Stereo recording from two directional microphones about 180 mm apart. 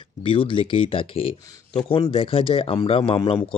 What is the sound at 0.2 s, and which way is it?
Speech, 30° left (ahead or behind).